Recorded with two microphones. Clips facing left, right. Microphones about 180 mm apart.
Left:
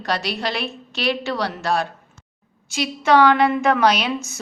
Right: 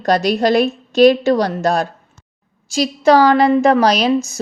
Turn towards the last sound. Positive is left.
turn(degrees=-35)  # may be behind; listen again after turning